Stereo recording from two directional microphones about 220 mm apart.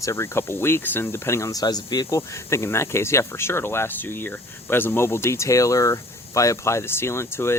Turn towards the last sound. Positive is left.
turn(degrees=10)  # may be behind; listen again after turning